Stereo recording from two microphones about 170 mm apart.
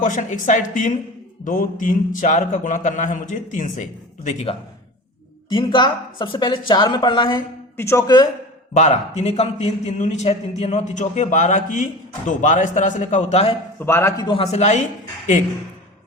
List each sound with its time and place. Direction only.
0.0 s a man's voice: 45° left (ahead or behind)
5.5 s a woman's voice: 30° left (ahead or behind)
7.8 s a woman's voice: 15° left (ahead or behind)
8.7 s a man's voice: 45° left (ahead or behind)
13.7 s a man's voice: 15° left (ahead or behind)
14.3 s a woman's voice: 35° left (ahead or behind)